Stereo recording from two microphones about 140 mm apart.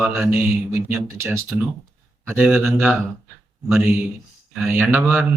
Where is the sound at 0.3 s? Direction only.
15° right (ahead or behind).